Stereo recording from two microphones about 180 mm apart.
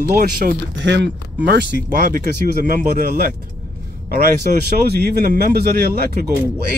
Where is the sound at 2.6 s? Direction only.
50° right (ahead or behind).